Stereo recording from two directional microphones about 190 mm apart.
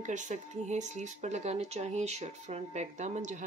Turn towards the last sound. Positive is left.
turn(degrees=-40)  # may be behind; listen again after turning